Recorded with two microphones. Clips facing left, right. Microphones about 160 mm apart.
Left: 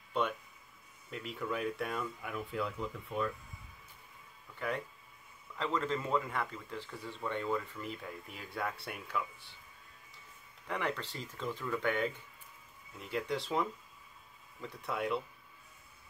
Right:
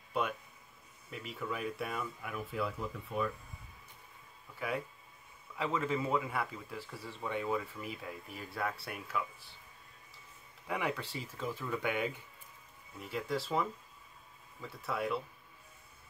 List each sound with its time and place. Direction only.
1.1 s speech: centre (ahead or behind)
4.6 s speech: 5° right (ahead or behind)
10.7 s speech: 10° right (ahead or behind)